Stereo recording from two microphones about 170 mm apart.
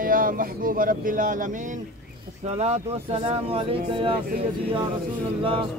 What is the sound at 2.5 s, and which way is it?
Speech, 40° right (ahead or behind).